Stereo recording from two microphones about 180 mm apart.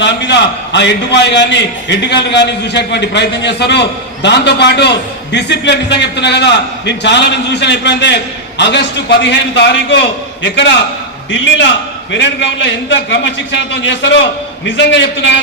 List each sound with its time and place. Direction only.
0.0 s a man's voice: 75° left (ahead or behind)
11.3 s a man's voice: 90° left